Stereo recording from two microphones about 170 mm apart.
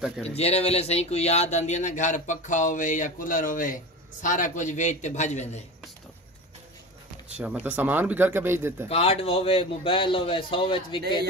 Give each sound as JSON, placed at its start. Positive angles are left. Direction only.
{"t": 0.4, "sound": "a man's voice", "side_deg": 35}
{"t": 7.2, "sound": "speech", "side_deg": -5}
{"t": 8.8, "sound": "a man's voice", "side_deg": 35}